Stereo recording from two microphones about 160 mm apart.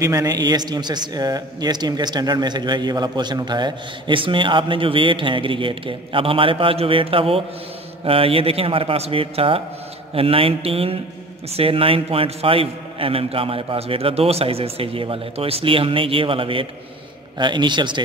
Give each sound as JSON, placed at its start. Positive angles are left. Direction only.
{"t": 0.0, "sound": "a man's voice", "side_deg": -20}